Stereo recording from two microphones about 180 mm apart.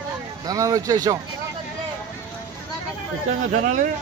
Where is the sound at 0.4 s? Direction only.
20° right (ahead or behind).